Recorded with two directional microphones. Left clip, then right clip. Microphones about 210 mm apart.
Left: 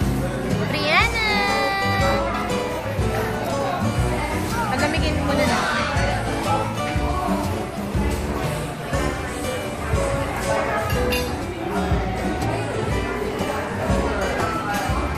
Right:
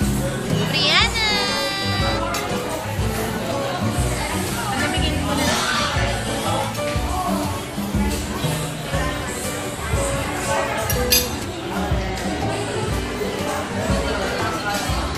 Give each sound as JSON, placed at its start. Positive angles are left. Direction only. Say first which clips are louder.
{"t": 0.7, "sound": "music", "louder": "right 1 dB", "side_deg": 30}